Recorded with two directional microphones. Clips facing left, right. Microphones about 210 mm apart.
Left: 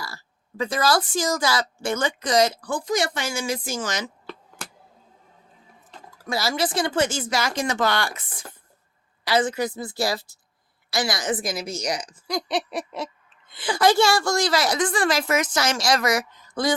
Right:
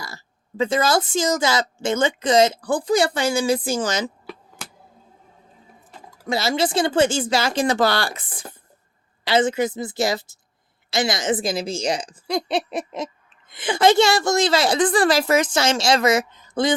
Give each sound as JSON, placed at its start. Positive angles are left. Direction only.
{"t": 0.0, "sound": "speech", "side_deg": -20}
{"t": 6.2, "sound": "speech", "side_deg": -25}